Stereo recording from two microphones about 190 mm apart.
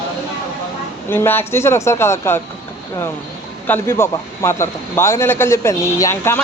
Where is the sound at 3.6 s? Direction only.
10° left (ahead or behind).